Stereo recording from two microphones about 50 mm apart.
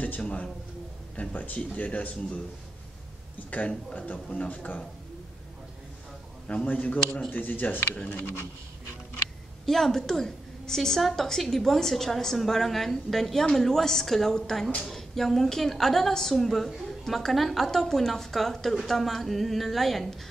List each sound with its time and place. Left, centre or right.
0.0 s a man's voice: left
3.4 s a man's voice: left
6.4 s a man's voice: left
9.7 s a woman's voice: centre